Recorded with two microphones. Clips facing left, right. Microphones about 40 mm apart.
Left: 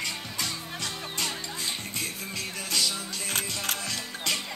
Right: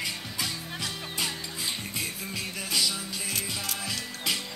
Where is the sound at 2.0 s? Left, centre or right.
Centre.